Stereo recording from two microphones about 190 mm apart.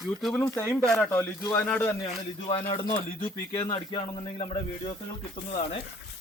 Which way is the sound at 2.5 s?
25° left (ahead or behind).